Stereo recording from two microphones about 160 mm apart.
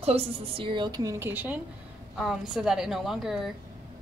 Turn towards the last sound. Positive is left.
turn(degrees=0)  # may be behind; listen again after turning